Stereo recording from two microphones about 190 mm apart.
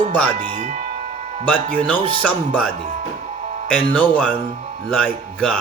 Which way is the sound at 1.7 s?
5° left (ahead or behind).